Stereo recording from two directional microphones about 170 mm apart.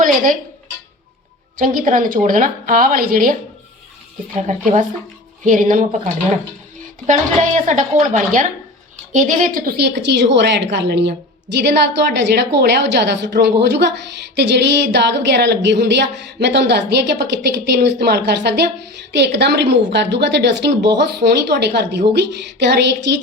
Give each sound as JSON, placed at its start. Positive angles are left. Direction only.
{"t": 1.5, "sound": "a woman's voice", "side_deg": -55}
{"t": 4.4, "sound": "speech", "side_deg": -45}
{"t": 7.1, "sound": "a woman's voice", "side_deg": -45}
{"t": 10.1, "sound": "a woman's voice", "side_deg": -90}